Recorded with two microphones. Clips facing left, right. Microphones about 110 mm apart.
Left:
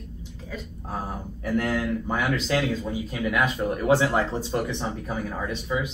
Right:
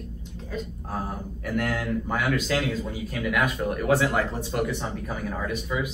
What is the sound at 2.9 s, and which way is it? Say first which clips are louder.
Speech: left 1 dB; 20° left (ahead or behind).